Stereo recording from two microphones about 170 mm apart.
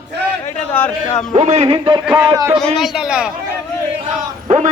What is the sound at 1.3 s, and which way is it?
Speech, 40° right (ahead or behind).